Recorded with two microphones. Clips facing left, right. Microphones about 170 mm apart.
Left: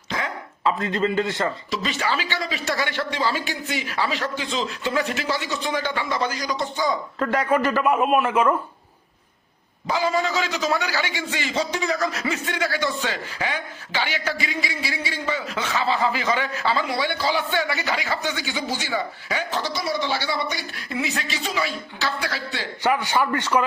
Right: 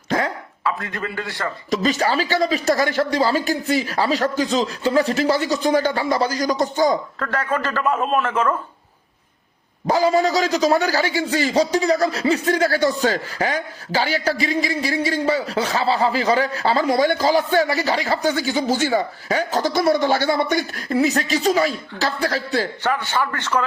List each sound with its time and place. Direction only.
0.6 s a man's voice: 20° left (ahead or behind)
1.7 s a man's voice: 40° right (ahead or behind)
7.2 s a man's voice: 15° left (ahead or behind)
9.8 s a man's voice: 40° right (ahead or behind)
22.8 s a man's voice: 15° left (ahead or behind)